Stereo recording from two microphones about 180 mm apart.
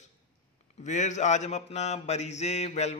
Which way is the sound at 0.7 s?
40° left (ahead or behind).